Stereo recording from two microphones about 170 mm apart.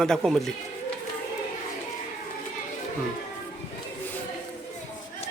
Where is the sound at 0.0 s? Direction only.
Centre (ahead or behind).